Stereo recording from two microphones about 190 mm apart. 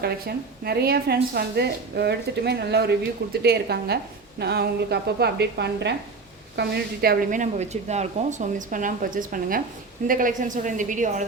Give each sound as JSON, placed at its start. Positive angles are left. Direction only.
{"t": 0.0, "sound": "a woman's voice", "side_deg": -55}